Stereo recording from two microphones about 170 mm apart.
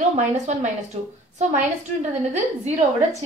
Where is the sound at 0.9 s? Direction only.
40° right (ahead or behind).